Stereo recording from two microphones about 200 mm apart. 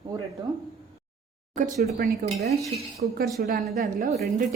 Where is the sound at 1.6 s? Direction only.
35° right (ahead or behind).